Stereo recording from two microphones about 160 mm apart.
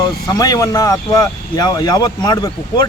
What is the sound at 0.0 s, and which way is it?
Speech, 25° left (ahead or behind).